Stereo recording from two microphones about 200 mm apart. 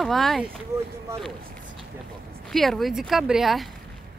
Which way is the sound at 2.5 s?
Centre (ahead or behind).